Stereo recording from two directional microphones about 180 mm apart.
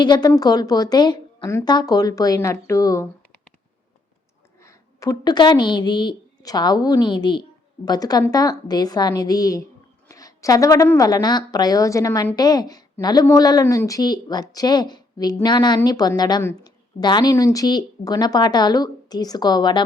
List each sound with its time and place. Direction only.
0.0 s a woman's voice: 25° left (ahead or behind)
4.6 s a woman's voice: 20° left (ahead or behind)